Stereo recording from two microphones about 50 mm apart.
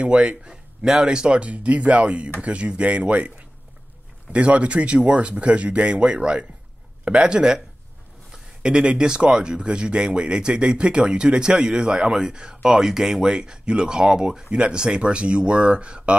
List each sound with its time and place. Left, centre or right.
0.0 s speech: right